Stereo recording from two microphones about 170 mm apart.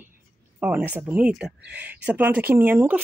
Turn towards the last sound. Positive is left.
turn(degrees=-10)  # may be behind; listen again after turning